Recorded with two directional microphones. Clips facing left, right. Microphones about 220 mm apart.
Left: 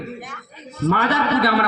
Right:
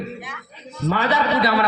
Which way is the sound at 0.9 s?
55° left (ahead or behind).